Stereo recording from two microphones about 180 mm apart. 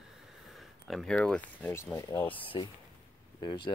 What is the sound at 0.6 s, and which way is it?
Speech, centre (ahead or behind).